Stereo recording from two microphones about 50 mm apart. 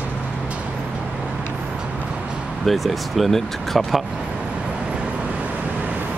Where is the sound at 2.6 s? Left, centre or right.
Centre.